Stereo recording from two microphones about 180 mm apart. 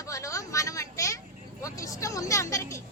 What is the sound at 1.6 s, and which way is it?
Vehicle, 15° left (ahead or behind).